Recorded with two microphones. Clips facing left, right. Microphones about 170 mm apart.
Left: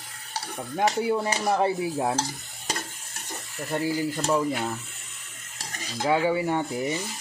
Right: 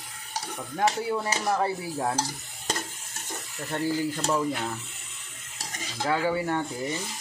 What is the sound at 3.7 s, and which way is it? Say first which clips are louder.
Speech: left 1 dB; 10° left (ahead or behind).